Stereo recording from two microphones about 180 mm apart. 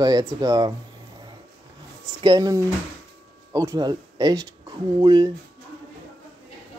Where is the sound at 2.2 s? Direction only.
20° right (ahead or behind).